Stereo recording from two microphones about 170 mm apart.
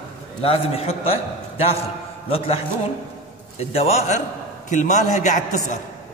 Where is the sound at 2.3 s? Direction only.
35° left (ahead or behind).